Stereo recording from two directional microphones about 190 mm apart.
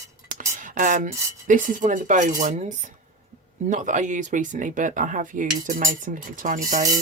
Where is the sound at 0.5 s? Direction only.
45° right (ahead or behind).